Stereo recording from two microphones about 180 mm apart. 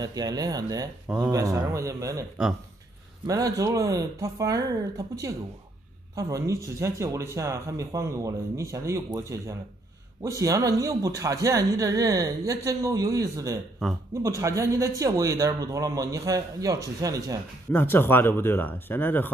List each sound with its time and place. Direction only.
0.0 s speech: 20° right (ahead or behind)
3.3 s speech: 20° right (ahead or behind)
17.6 s speech: 10° left (ahead or behind)